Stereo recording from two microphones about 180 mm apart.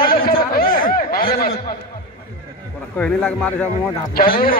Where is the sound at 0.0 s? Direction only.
55° left (ahead or behind).